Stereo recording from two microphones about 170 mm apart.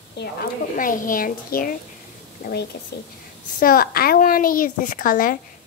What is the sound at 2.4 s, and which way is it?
Speech, 75° left (ahead or behind).